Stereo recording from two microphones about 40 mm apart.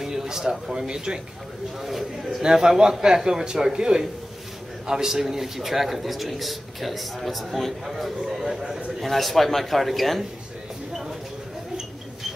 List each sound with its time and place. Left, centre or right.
0.0 s speech: centre
1.8 s a man's voice: centre
2.4 s a man's voice: centre